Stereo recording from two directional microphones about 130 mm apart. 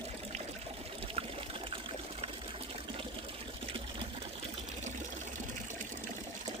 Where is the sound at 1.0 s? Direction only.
45° right (ahead or behind).